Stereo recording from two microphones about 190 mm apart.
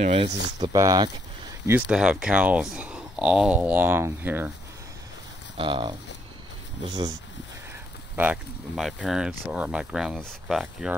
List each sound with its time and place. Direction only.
0.0 s speech: 30° right (ahead or behind)
1.7 s speech: 5° right (ahead or behind)
5.6 s speech: 25° right (ahead or behind)
8.2 s speech: 5° right (ahead or behind)